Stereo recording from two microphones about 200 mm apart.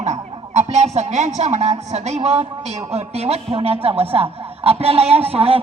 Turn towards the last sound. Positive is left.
turn(degrees=-30)  # may be behind; listen again after turning